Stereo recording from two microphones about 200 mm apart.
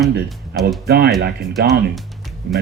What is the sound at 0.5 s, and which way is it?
Speech, 55° right (ahead or behind).